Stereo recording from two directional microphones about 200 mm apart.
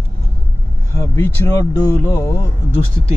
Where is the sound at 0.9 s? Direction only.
15° left (ahead or behind).